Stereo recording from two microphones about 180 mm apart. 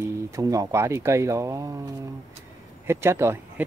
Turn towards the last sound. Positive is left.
turn(degrees=-15)  # may be behind; listen again after turning